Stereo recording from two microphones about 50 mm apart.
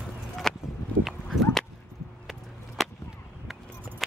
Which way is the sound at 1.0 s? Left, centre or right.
Centre.